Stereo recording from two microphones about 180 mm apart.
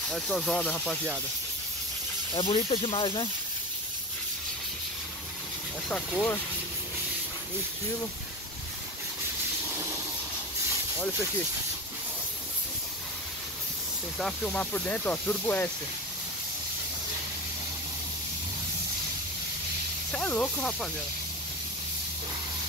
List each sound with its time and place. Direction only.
0.1 s speech: 5° left (ahead or behind)
2.3 s speech: 30° left (ahead or behind)
5.9 s speech: 5° left (ahead or behind)
14.1 s speech: 5° left (ahead or behind)
20.1 s speech: 5° left (ahead or behind)